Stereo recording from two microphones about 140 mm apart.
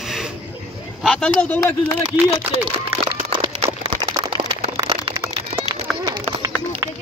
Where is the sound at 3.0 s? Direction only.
35° right (ahead or behind).